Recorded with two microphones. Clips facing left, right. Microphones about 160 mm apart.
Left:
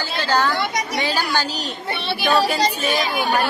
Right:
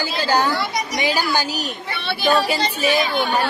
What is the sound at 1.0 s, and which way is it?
Speech, 10° right (ahead or behind).